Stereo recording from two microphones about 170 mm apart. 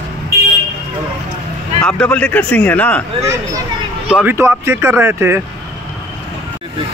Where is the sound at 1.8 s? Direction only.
5° left (ahead or behind).